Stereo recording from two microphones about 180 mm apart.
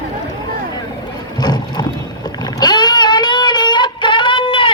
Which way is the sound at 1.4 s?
25° left (ahead or behind).